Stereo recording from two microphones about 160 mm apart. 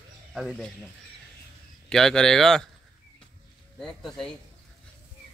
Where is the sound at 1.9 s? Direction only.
5° left (ahead or behind).